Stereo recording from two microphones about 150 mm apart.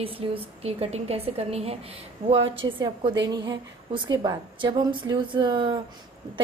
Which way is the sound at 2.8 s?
30° right (ahead or behind).